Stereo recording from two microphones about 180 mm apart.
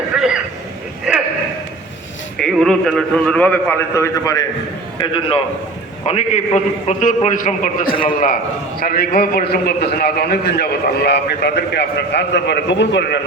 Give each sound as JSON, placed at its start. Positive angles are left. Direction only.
{"t": 0.2, "sound": "a sound", "side_deg": -5}
{"t": 2.4, "sound": "a man's voice", "side_deg": 5}
{"t": 4.9, "sound": "a man's voice", "side_deg": 30}